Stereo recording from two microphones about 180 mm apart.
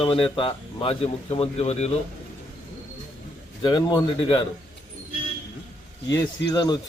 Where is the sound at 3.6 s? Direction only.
25° left (ahead or behind).